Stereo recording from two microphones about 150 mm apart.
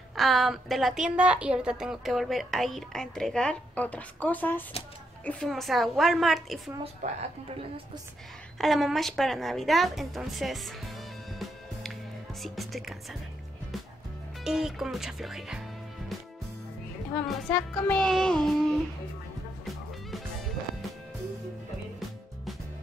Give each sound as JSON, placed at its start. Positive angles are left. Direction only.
{"t": 0.1, "sound": "a woman's voice", "side_deg": 0}
{"t": 7.0, "sound": "a woman's voice", "side_deg": -55}
{"t": 8.5, "sound": "a woman's voice", "side_deg": 0}
{"t": 12.4, "sound": "a woman's voice", "side_deg": 0}
{"t": 14.4, "sound": "a woman's voice", "side_deg": -5}
{"t": 17.1, "sound": "a woman's voice", "side_deg": 10}
{"t": 19.6, "sound": "music", "side_deg": 0}